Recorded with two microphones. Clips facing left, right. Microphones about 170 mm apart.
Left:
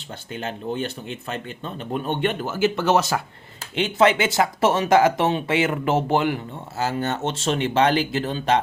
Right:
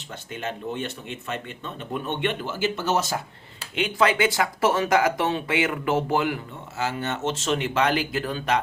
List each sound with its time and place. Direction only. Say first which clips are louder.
0.3 s speech: left 3 dB; 35° left (ahead or behind); by 3.2 s 65° left (ahead or behind)
3.8 s speech: left 3 dB; 25° left (ahead or behind)